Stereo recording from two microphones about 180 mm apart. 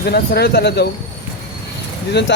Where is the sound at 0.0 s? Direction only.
60° left (ahead or behind).